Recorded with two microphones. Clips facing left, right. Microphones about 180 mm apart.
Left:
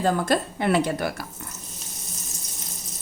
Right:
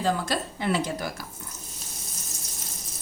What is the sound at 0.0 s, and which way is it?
Speech, 55° left (ahead or behind).